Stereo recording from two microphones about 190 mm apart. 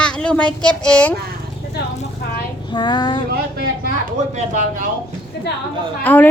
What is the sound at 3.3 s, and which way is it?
Speech, 55° right (ahead or behind).